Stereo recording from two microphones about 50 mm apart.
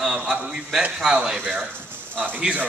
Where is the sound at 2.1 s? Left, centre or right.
Right.